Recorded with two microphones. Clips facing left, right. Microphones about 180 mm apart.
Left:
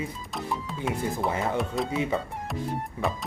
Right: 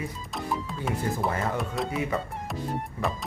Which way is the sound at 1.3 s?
15° left (ahead or behind).